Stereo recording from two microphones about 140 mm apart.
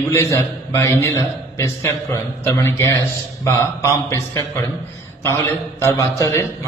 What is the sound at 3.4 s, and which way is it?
A man's voice, 20° left (ahead or behind).